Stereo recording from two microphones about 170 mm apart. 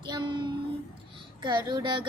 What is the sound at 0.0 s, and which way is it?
Child singing, 30° right (ahead or behind).